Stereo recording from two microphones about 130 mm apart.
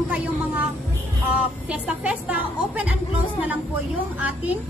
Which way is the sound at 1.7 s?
10° right (ahead or behind).